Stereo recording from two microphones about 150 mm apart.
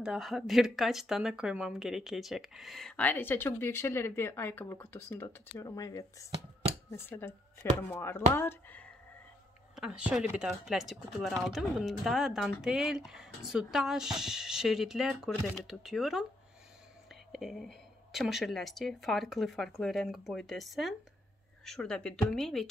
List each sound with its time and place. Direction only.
0.0 s speech: 5° right (ahead or behind); by 8.8 s 15° left (ahead or behind)
9.8 s speech: 5° right (ahead or behind)